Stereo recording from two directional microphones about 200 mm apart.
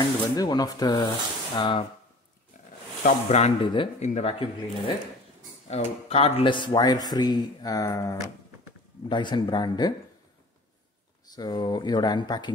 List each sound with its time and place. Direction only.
0.4 s speech: 20° left (ahead or behind)
3.0 s speech: 35° left (ahead or behind)
11.3 s speech: 20° left (ahead or behind)